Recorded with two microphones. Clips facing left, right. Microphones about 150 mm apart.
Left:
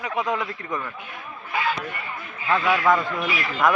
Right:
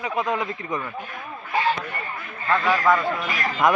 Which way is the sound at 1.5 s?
35° right (ahead or behind).